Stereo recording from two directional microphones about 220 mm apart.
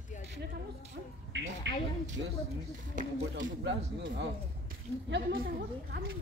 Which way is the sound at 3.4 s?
55° right (ahead or behind).